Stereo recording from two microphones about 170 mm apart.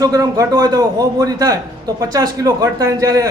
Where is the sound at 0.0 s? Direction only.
20° right (ahead or behind).